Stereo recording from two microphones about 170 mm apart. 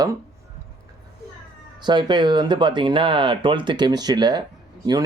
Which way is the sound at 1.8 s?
25° right (ahead or behind).